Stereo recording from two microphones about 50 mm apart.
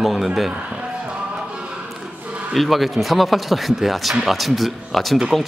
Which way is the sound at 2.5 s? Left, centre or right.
Centre.